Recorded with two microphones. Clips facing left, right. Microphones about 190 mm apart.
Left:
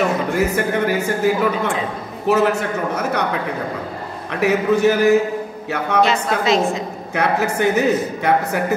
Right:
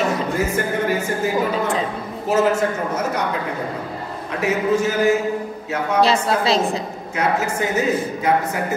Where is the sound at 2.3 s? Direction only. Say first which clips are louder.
Left 1 dB; 65° left (ahead or behind).